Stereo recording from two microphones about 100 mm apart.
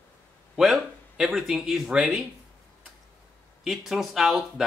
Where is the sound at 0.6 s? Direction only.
Centre (ahead or behind).